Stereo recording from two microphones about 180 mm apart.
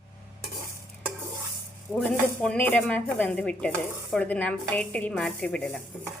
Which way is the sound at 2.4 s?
5° left (ahead or behind).